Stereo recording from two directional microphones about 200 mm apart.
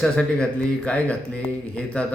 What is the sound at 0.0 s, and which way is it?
Speech, 5° left (ahead or behind).